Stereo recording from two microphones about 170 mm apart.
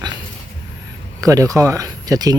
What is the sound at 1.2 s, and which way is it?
Speech, 20° right (ahead or behind).